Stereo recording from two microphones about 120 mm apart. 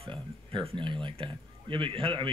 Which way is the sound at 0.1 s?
45° right (ahead or behind).